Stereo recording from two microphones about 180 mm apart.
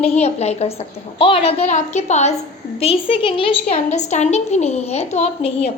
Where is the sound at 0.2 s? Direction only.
35° left (ahead or behind).